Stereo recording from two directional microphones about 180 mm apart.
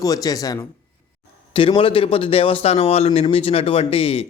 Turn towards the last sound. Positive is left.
turn(degrees=30)  # may be behind; listen again after turning